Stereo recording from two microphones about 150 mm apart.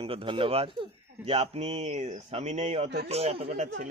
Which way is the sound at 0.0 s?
40° right (ahead or behind).